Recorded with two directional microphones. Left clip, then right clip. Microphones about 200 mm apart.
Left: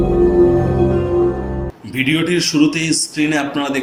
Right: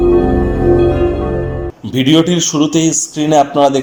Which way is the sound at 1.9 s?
35° right (ahead or behind).